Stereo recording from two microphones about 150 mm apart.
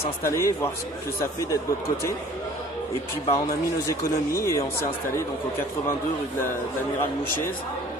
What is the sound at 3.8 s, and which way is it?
Speech, 20° left (ahead or behind).